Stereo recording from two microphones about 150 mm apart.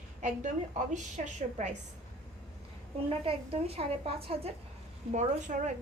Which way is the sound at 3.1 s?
40° right (ahead or behind).